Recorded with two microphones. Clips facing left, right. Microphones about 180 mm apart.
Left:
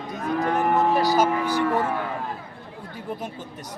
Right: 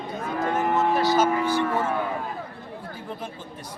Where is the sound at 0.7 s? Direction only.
35° left (ahead or behind).